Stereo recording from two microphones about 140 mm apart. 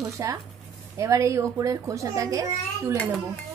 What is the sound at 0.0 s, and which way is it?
A woman's voice, 25° right (ahead or behind).